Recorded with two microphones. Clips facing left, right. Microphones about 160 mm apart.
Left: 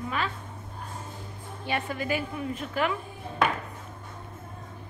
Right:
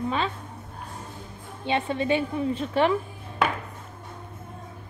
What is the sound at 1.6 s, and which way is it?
A woman's voice, 25° right (ahead or behind).